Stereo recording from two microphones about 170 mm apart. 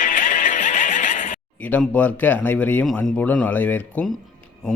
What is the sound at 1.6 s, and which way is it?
Speech, 10° left (ahead or behind).